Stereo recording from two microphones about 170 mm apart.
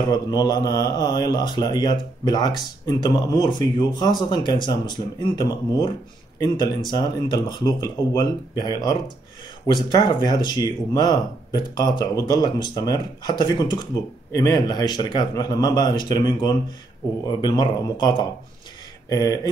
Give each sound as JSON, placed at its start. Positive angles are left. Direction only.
{"t": 0.1, "sound": "speech", "side_deg": 25}